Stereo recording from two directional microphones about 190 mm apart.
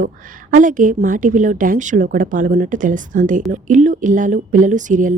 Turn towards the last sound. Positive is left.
turn(degrees=-40)  # may be behind; listen again after turning